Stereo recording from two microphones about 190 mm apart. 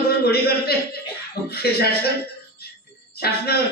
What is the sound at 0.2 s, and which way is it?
A man's voice, 55° left (ahead or behind).